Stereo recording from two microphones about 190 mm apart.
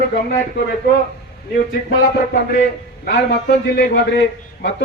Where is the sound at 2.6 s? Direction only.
55° left (ahead or behind).